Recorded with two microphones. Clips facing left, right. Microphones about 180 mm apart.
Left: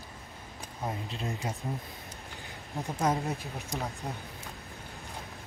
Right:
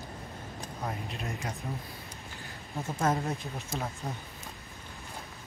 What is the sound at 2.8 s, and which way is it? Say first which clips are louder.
Speech: even; 15° left (ahead or behind).